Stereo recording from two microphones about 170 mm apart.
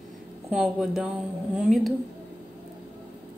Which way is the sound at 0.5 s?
Centre (ahead or behind).